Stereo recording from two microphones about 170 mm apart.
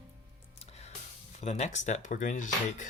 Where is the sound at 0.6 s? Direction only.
40° left (ahead or behind).